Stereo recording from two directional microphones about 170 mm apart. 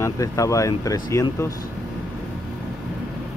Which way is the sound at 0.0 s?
20° left (ahead or behind).